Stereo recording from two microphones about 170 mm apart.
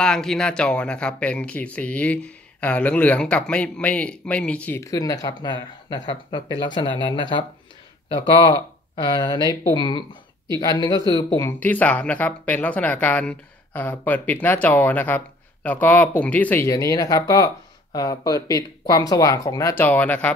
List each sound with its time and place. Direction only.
0.0 s speech: 5° left (ahead or behind)
4.9 s speech: 20° left (ahead or behind)
11.6 s speech: 10° left (ahead or behind)